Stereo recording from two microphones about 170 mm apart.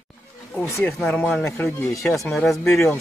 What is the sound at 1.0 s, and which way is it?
Speech, 5° left (ahead or behind).